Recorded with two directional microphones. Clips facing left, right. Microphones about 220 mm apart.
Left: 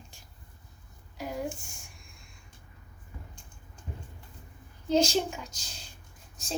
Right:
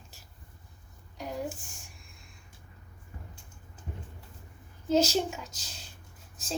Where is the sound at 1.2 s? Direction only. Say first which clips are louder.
Left 1 dB; centre (ahead or behind).